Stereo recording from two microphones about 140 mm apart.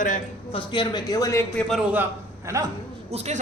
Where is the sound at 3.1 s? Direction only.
50° right (ahead or behind).